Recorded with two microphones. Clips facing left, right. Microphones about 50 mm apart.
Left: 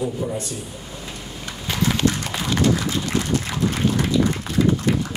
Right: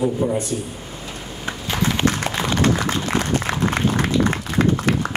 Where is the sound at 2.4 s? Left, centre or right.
Right.